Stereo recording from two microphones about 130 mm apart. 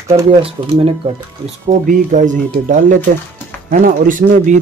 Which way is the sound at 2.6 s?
85° right.